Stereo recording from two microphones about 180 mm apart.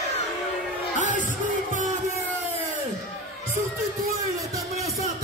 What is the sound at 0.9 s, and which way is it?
Music, 45° right (ahead or behind).